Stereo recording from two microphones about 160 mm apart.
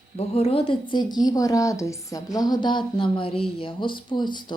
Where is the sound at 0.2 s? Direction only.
40° left (ahead or behind).